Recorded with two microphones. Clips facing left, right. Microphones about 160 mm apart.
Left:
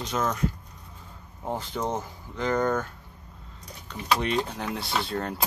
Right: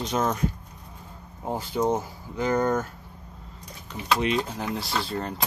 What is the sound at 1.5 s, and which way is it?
Speech, 10° right (ahead or behind).